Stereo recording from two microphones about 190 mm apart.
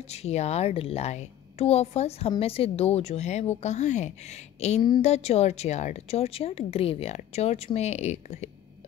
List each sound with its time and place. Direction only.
0.1 s a woman's voice: 35° left (ahead or behind)